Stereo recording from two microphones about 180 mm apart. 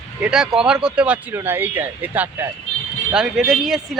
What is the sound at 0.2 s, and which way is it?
Speech, 5° right (ahead or behind).